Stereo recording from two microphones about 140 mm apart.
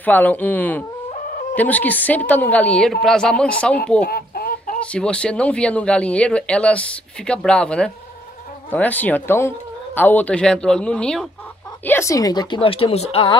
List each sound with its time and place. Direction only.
0.0 s speech: 10° left (ahead or behind)
4.1 s chicken: 90° left
4.7 s speech: 10° left (ahead or behind)
11.8 s a woman's voice: 20° left (ahead or behind); by 13.4 s 40° left (ahead or behind)